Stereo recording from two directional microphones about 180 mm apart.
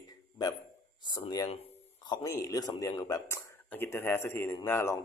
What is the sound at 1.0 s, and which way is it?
Speech, 25° left (ahead or behind).